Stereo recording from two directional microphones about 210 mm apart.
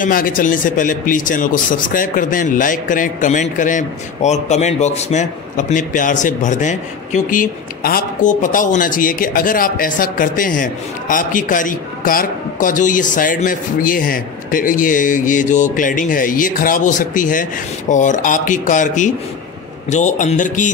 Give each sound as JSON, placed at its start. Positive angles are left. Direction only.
{"t": 0.0, "sound": "speech", "side_deg": 40}